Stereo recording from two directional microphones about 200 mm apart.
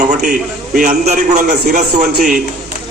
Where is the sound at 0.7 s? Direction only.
40° right (ahead or behind).